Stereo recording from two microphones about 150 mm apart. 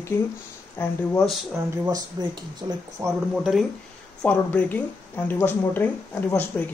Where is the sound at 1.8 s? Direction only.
25° right (ahead or behind).